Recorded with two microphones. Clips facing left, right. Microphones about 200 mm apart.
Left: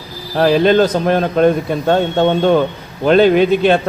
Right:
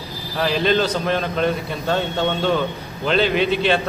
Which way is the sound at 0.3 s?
50° left (ahead or behind).